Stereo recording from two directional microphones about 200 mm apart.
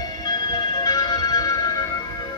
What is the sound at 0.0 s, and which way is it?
Music, 20° left (ahead or behind).